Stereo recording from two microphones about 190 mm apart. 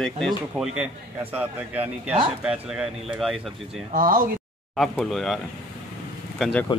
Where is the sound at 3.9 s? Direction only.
45° right (ahead or behind).